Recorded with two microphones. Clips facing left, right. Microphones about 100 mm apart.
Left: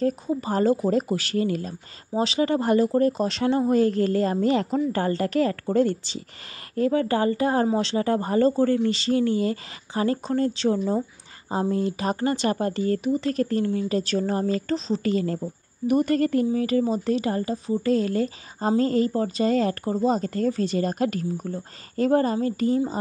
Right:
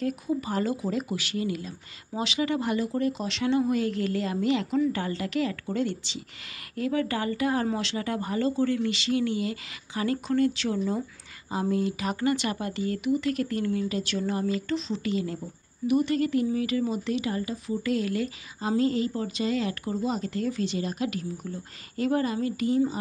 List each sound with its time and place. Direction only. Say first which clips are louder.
0.0 s speech: left 4 dB; 35° left (ahead or behind)